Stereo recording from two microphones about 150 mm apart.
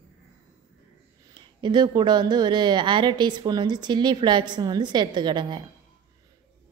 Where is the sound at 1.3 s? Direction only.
30° right (ahead or behind).